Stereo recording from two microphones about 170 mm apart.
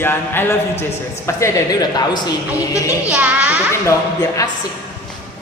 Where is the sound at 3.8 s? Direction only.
20° left (ahead or behind).